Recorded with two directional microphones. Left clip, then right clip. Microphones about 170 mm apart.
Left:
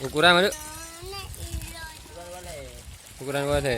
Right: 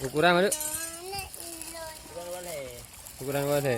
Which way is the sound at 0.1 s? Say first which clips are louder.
Left 4 dB; 5° left (ahead or behind).